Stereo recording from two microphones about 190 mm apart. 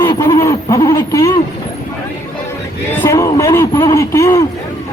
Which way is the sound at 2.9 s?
15° left (ahead or behind).